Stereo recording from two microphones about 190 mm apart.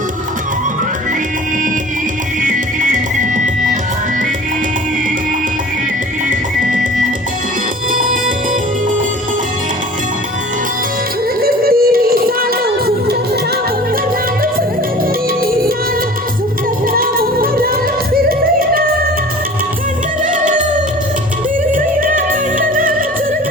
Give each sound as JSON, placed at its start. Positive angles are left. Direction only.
{"t": 2.4, "sound": "music", "side_deg": -45}
{"t": 7.9, "sound": "music", "side_deg": -45}
{"t": 11.3, "sound": "music", "side_deg": -50}
{"t": 16.9, "sound": "music", "side_deg": -50}
{"t": 20.2, "sound": "music", "side_deg": -45}
{"t": 21.7, "sound": "music", "side_deg": -45}